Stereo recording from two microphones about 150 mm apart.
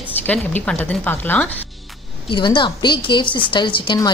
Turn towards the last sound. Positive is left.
turn(degrees=30)  # may be behind; listen again after turning